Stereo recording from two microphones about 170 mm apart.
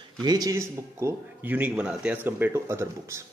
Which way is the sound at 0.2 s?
20° right (ahead or behind).